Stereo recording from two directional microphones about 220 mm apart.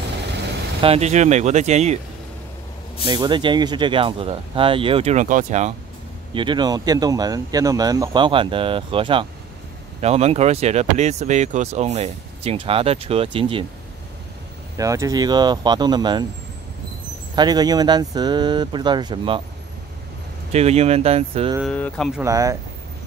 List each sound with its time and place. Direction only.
0.8 s speech: 30° right (ahead or behind)
3.1 s speech: 20° right (ahead or behind)
6.3 s speech: 20° right (ahead or behind)
14.8 s speech: 15° right (ahead or behind)
17.4 s speech: 20° right (ahead or behind)
20.5 s speech: 30° right (ahead or behind)
21.7 s speech: 5° left (ahead or behind)
22.2 s speech: 15° right (ahead or behind)